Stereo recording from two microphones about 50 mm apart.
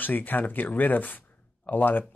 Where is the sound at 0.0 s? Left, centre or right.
Left.